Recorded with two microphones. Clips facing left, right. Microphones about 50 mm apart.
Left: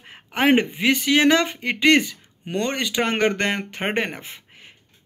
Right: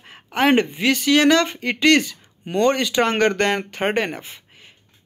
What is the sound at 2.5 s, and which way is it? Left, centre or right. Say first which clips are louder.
Speech: right 6 dB; centre.